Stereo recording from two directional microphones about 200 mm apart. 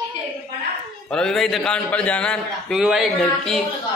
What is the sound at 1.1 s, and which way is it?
A man's voice, 5° left (ahead or behind).